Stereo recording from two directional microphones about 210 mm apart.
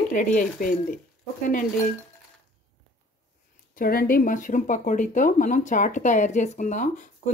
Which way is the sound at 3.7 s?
45° left (ahead or behind).